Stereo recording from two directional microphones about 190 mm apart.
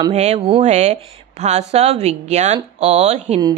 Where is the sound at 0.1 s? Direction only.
35° right (ahead or behind).